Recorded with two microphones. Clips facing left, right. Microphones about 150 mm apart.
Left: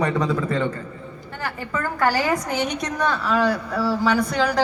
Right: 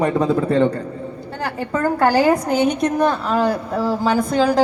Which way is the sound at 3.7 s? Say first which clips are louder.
Right 2 dB; 20° right (ahead or behind).